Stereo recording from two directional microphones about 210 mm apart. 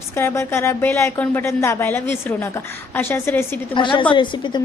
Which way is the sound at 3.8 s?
25° left (ahead or behind).